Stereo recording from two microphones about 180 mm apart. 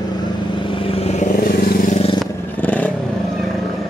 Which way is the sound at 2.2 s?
10° left (ahead or behind).